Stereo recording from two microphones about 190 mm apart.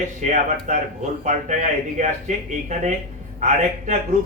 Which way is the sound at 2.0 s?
40° right (ahead or behind).